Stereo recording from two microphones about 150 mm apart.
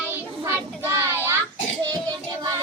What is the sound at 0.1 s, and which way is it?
Child singing, 15° right (ahead or behind).